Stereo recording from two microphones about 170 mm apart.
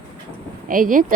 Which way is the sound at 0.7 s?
55° right (ahead or behind).